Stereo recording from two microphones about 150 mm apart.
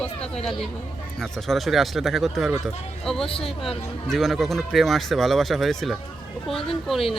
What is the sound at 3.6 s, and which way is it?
A man's voice, centre (ahead or behind).